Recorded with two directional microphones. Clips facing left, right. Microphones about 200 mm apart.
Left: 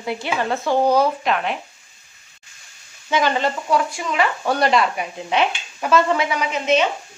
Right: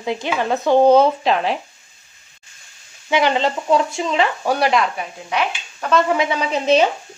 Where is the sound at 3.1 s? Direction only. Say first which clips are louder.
Right 2 dB; 15° right (ahead or behind).